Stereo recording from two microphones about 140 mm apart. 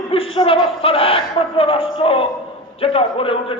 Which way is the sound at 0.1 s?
40° left (ahead or behind).